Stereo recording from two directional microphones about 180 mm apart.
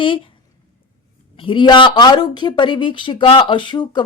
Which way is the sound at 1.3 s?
30° left (ahead or behind).